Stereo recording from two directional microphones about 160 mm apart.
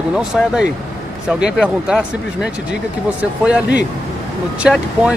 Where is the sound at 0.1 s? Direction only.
5° right (ahead or behind).